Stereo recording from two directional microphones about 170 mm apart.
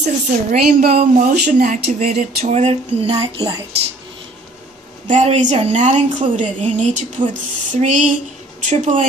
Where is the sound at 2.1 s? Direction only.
40° right (ahead or behind).